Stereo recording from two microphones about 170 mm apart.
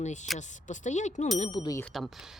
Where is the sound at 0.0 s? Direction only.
45° left (ahead or behind).